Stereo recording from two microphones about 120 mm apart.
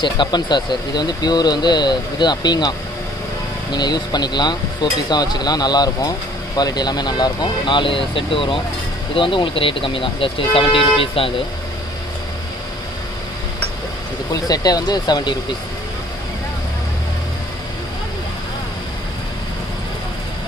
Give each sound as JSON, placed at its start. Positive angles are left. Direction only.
{"t": 0.0, "sound": "speech", "side_deg": 40}
{"t": 3.7, "sound": "speech", "side_deg": 35}
{"t": 14.3, "sound": "speech", "side_deg": 35}